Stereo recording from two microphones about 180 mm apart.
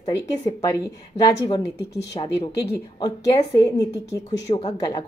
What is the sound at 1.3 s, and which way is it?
A woman's voice, 20° left (ahead or behind).